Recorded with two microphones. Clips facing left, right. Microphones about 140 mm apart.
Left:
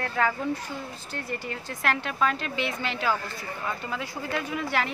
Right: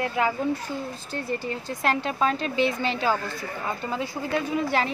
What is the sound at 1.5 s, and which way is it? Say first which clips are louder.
A woman's voice: right 2 dB; 25° right (ahead or behind).